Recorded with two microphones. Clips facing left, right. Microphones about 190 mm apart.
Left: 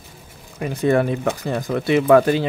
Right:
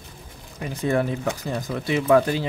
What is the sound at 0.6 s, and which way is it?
Speech, 65° left (ahead or behind).